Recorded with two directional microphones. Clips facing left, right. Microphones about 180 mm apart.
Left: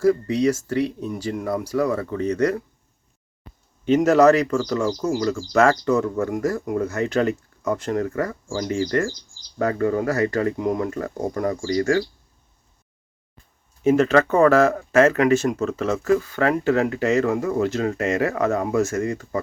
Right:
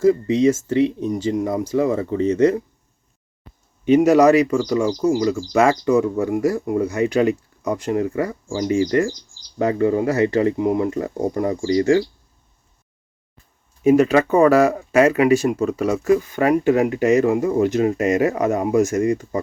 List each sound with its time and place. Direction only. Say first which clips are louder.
0.0 s speech: right 3 dB; 20° right (ahead or behind)
3.8 s speech: right 2 dB; 15° right (ahead or behind)
10.6 s speech: right 4 dB; 10° right (ahead or behind)
10.8 s speech: right 4 dB; 20° right (ahead or behind)
13.8 s speech: right 2 dB; 10° right (ahead or behind)